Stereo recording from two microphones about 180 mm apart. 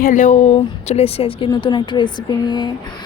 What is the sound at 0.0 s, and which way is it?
A woman's voice, 45° left (ahead or behind).